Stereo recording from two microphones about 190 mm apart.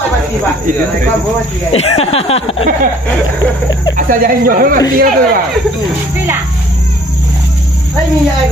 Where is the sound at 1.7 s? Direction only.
30° left (ahead or behind).